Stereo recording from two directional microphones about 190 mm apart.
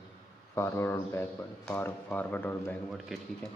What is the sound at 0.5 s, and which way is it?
A man's voice, 15° left (ahead or behind).